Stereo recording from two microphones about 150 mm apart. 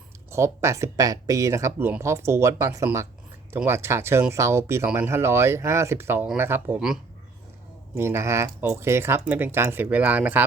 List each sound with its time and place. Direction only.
0.3 s speech: 20° right (ahead or behind)
7.9 s speech: 15° right (ahead or behind)